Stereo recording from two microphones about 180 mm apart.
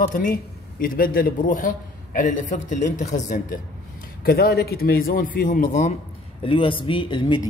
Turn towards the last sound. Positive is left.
turn(degrees=25)  # may be behind; listen again after turning